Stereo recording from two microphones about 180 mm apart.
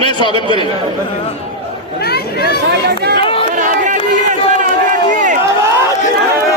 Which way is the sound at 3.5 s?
45° right (ahead or behind).